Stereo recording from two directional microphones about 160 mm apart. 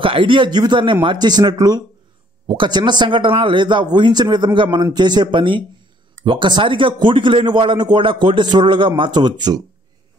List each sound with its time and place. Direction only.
0.0 s speech: 35° right (ahead or behind)